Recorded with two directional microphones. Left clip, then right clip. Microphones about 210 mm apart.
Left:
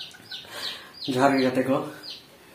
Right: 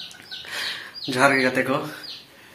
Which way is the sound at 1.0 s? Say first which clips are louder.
Right 3 dB; 5° right (ahead or behind).